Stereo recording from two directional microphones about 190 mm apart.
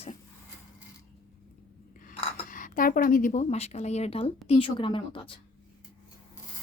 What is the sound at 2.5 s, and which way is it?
A woman's voice, 45° left (ahead or behind).